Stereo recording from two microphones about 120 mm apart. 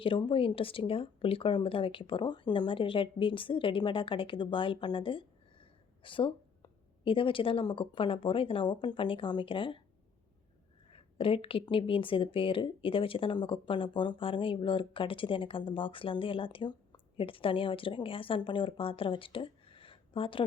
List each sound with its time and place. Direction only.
0.0 s speech: 45° left (ahead or behind)
10.9 s speech: 50° left (ahead or behind)